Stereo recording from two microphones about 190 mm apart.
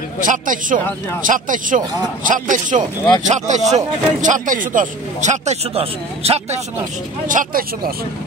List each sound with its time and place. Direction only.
0.2 s speech: 45° right (ahead or behind)
7.2 s speech: 45° right (ahead or behind)